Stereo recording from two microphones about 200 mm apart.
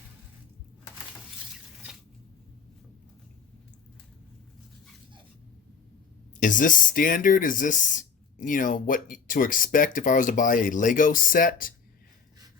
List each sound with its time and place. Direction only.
6.4 s speech: 40° left (ahead or behind)